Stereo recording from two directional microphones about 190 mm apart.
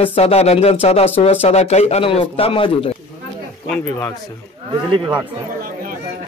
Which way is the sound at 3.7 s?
10° left (ahead or behind).